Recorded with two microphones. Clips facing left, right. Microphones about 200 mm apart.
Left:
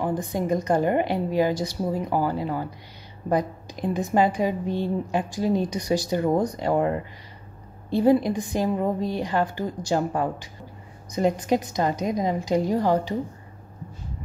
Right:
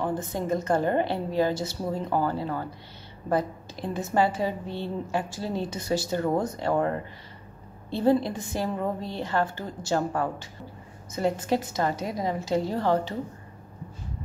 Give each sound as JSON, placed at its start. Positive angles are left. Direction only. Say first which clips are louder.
{"t": 0.0, "sound": "a woman's voice", "louder": "left 3 dB", "side_deg": 15}